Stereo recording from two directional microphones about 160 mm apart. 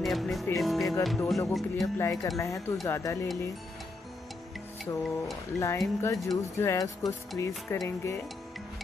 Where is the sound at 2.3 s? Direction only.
20° left (ahead or behind).